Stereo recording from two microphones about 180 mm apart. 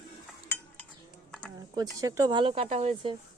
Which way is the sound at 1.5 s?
20° right (ahead or behind).